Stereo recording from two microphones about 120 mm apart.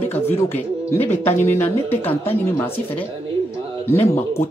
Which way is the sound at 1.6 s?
15° left (ahead or behind).